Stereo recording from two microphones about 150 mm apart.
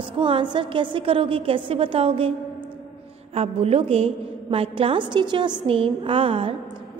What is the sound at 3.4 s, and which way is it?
A woman's voice, 40° right (ahead or behind).